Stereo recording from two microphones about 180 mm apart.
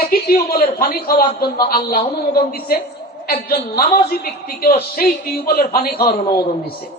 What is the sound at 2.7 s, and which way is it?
A man's voice, 55° left (ahead or behind).